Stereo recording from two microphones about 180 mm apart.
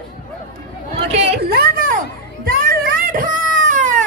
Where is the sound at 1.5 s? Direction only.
55° right (ahead or behind).